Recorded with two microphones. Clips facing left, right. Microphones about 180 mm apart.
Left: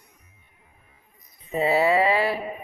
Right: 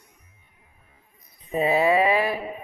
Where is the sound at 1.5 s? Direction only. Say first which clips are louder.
Even; 20° right (ahead or behind).